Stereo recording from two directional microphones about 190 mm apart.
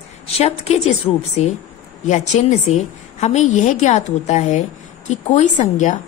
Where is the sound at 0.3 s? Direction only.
35° left (ahead or behind).